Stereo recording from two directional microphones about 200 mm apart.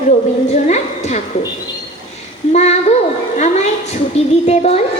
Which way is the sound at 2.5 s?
35° left (ahead or behind).